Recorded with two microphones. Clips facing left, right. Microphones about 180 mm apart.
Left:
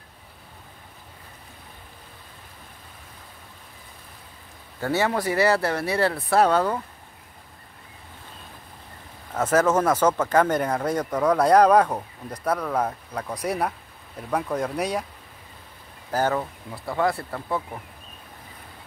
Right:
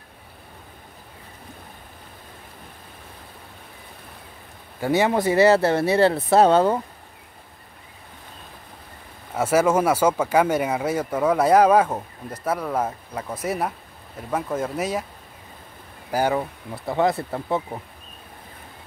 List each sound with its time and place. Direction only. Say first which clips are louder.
4.7 s speech: right 4 dB; 15° right (ahead or behind)
9.3 s speech: right 1 dB; 10° right (ahead or behind)
16.1 s speech: right 2 dB; 10° right (ahead or behind)